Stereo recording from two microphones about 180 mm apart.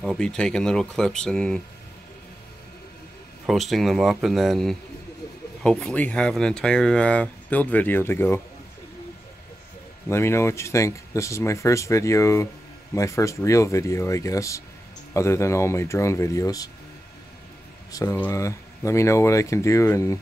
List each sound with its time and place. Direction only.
0.0 s speech: 5° left (ahead or behind)
3.4 s speech: centre (ahead or behind)
10.0 s speech: 15° left (ahead or behind)
17.9 s speech: 15° left (ahead or behind)